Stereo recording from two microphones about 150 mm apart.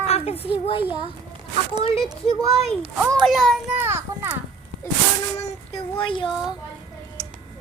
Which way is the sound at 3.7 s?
15° right (ahead or behind).